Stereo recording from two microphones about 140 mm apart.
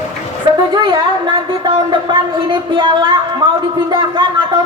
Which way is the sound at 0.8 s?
30° right (ahead or behind).